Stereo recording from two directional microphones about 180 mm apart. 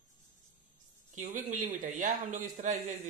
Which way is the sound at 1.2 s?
45° right (ahead or behind).